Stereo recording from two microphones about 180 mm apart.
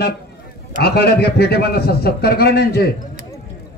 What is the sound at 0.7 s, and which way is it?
A man's voice, 65° left (ahead or behind).